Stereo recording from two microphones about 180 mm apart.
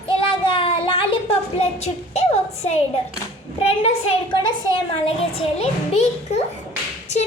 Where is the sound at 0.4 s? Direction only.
30° left (ahead or behind).